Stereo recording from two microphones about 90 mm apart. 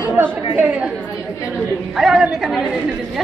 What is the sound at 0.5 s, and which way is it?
Speech, 15° right (ahead or behind).